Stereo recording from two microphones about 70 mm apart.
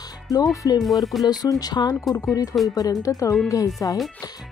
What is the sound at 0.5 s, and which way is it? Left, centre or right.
Speech, left.